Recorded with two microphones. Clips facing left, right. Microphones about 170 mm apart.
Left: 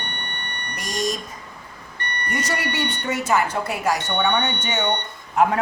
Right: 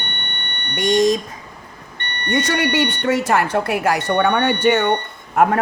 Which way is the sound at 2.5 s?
75° right (ahead or behind).